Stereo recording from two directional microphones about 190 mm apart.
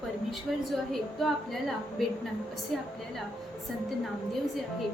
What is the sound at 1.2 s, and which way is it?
Speech, centre (ahead or behind).